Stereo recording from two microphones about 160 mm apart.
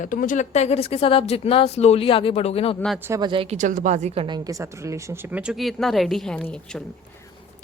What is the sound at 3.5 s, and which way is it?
Speech, 55° right (ahead or behind).